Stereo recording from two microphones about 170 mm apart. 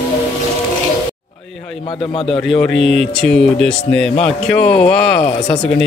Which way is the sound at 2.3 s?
Centre (ahead or behind).